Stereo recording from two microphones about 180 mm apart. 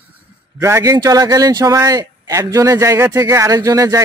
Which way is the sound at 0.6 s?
15° right (ahead or behind).